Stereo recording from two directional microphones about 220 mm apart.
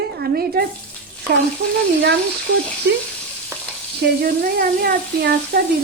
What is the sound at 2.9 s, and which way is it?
Speech, 50° right (ahead or behind).